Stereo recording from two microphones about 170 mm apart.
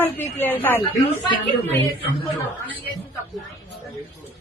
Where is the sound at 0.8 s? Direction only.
30° left (ahead or behind).